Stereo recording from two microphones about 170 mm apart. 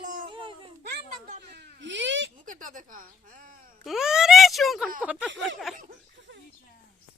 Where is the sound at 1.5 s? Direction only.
85° right.